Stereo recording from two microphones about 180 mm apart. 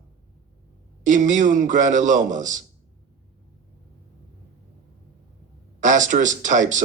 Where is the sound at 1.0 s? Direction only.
45° right (ahead or behind).